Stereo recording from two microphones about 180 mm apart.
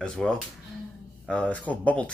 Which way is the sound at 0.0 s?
5° left (ahead or behind).